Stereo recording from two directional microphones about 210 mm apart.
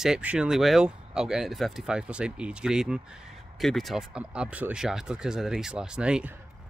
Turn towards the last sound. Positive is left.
turn(degrees=-5)  # may be behind; listen again after turning